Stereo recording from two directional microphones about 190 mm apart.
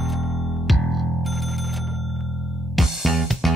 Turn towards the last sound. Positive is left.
turn(degrees=0)  # may be behind; listen again after turning